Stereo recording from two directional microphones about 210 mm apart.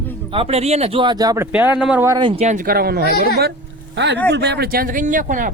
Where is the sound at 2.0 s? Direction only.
20° right (ahead or behind).